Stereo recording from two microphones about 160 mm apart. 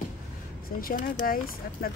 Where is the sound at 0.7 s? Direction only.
65° left (ahead or behind).